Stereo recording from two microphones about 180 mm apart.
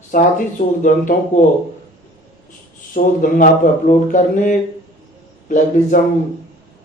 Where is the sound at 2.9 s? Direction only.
50° left (ahead or behind).